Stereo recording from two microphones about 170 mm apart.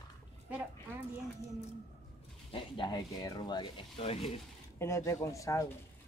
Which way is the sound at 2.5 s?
30° left (ahead or behind).